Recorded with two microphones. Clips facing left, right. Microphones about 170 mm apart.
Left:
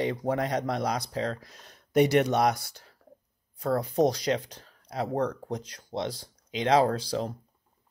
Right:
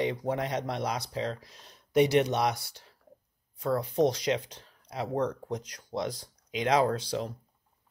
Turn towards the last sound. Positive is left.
turn(degrees=35)  # may be behind; listen again after turning